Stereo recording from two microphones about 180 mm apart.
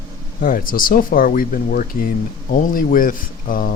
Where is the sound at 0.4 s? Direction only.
50° left (ahead or behind).